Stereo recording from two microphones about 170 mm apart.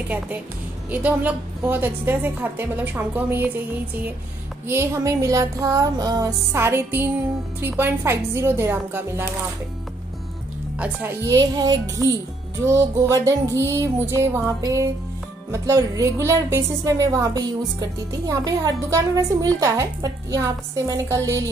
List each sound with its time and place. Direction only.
0.8 s a woman's voice: 10° right (ahead or behind)
4.6 s a woman's voice: 15° right (ahead or behind)
11.2 s a woman's voice: 20° right (ahead or behind)